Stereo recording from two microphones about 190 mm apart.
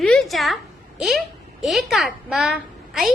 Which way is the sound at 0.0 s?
5° left (ahead or behind).